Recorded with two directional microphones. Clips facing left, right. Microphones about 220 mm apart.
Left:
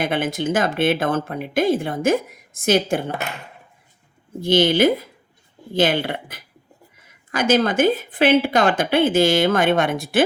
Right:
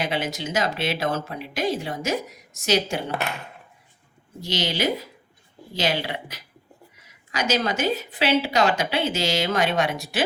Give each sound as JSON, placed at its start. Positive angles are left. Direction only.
{"t": 0.0, "sound": "a woman's voice", "side_deg": 50}
{"t": 4.4, "sound": "a woman's voice", "side_deg": 55}